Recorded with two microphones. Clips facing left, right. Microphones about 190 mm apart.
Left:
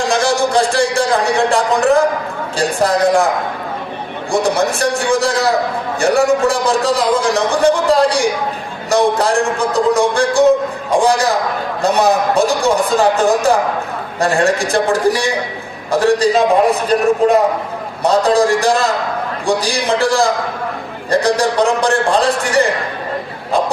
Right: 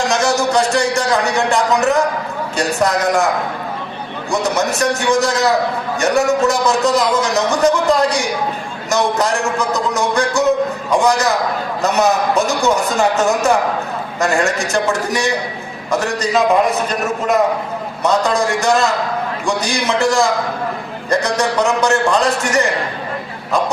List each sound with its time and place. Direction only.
0.1 s a man's voice: 30° left (ahead or behind)
4.3 s a man's voice: 30° left (ahead or behind)